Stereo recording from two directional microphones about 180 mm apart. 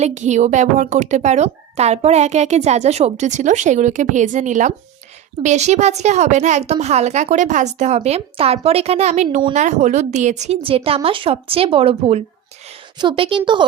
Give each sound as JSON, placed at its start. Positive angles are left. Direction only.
{"t": 0.0, "sound": "a woman's voice", "side_deg": -40}